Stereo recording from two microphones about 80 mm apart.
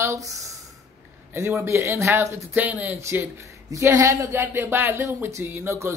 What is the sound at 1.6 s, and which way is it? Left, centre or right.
Speech, right.